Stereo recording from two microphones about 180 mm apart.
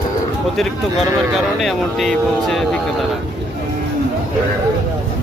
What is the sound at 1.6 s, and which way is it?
Speech, centre (ahead or behind).